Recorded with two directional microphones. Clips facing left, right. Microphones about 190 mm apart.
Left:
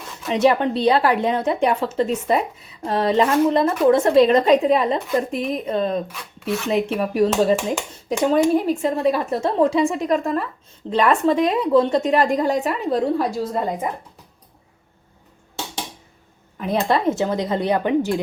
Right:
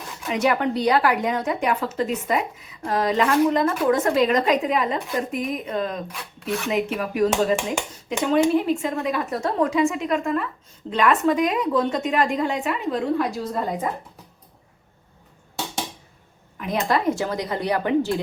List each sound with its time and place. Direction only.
0.3 s a woman's voice: 25° left (ahead or behind)
16.6 s a woman's voice: 30° left (ahead or behind)